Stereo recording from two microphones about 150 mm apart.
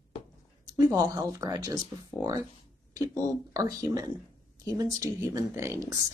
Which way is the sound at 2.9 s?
20° right (ahead or behind).